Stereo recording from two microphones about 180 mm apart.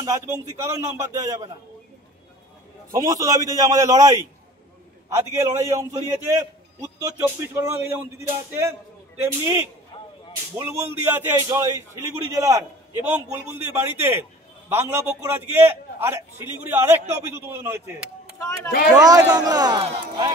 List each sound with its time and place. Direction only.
0.0 s a man's voice: 15° right (ahead or behind)
2.9 s a man's voice: 20° right (ahead or behind)
9.9 s a sound: 30° left (ahead or behind)
10.5 s a man's voice: 10° right (ahead or behind)
18.9 s a man's voice: 20° right (ahead or behind)